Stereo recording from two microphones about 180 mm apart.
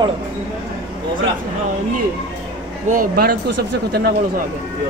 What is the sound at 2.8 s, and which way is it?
Speech, 55° right (ahead or behind).